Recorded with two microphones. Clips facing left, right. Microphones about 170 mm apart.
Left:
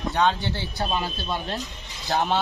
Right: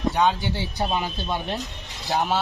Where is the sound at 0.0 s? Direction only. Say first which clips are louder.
Right 1 dB; 15° right (ahead or behind).